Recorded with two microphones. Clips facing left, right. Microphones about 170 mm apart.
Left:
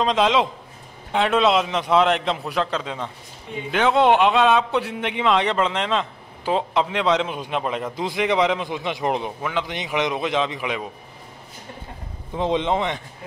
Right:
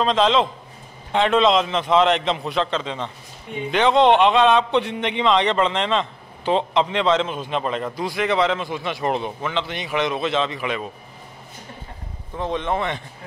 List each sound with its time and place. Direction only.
0.0 s speech: 10° left (ahead or behind)
7.9 s speech: 20° left (ahead or behind)
12.4 s speech: 20° left (ahead or behind)